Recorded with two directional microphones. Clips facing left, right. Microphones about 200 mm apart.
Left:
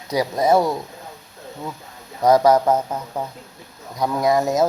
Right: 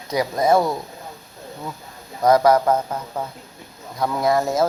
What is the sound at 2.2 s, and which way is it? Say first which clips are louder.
Speech: left 1 dB; 15° left (ahead or behind).